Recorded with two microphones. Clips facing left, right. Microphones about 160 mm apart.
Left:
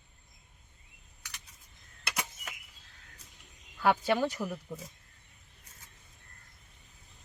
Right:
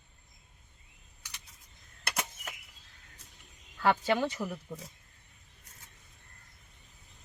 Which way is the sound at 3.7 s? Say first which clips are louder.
Even; 5° left (ahead or behind).